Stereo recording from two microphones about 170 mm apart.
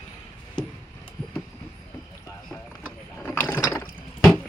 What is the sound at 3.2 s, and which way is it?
Ratchet, 10° left (ahead or behind).